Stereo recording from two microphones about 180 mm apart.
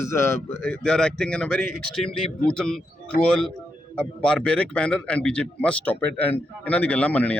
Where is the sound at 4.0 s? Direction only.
5° left (ahead or behind).